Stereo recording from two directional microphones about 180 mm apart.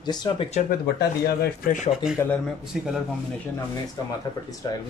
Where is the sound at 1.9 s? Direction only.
5° right (ahead or behind).